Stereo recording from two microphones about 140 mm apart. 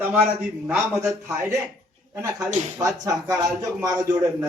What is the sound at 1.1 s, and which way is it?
Speech, 25° right (ahead or behind).